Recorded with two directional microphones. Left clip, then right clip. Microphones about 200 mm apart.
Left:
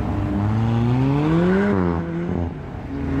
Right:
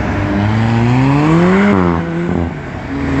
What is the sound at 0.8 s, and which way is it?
Vehicle, 45° right (ahead or behind).